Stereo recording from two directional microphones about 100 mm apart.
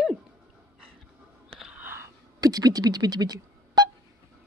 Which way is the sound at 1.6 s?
10° right (ahead or behind).